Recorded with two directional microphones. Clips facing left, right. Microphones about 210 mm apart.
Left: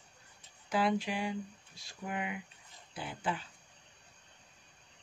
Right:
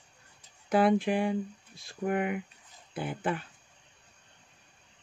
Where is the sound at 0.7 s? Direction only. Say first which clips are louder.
Right 7 dB; 55° right (ahead or behind).